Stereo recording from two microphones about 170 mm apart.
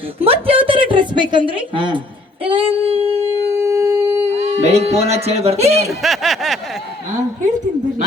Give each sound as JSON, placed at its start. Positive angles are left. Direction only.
{"t": 0.2, "sound": "a woman's voice", "side_deg": -35}
{"t": 2.4, "sound": "female singing", "side_deg": -30}
{"t": 3.5, "sound": "a sound", "side_deg": -15}
{"t": 4.6, "sound": "speech", "side_deg": -40}
{"t": 5.9, "sound": "snicker", "side_deg": 0}